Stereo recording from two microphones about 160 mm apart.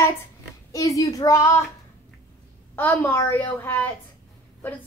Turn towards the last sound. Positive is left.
turn(degrees=10)  # may be behind; listen again after turning